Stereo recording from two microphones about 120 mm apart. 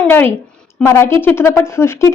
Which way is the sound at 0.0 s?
15° left (ahead or behind).